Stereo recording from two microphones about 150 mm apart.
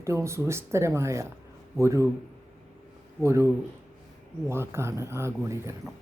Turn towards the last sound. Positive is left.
turn(degrees=-20)  # may be behind; listen again after turning